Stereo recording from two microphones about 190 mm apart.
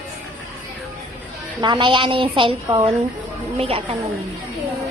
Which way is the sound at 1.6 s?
25° right (ahead or behind).